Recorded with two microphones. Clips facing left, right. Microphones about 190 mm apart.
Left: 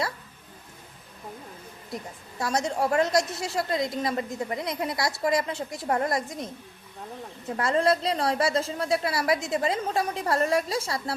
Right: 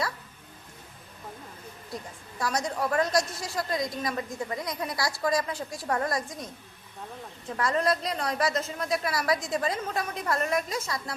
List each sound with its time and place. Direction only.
1.9 s a woman's voice: 20° left (ahead or behind)